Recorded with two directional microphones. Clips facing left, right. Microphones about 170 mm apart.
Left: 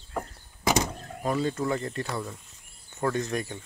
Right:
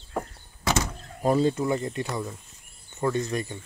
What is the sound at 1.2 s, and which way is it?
Speech, 30° right (ahead or behind).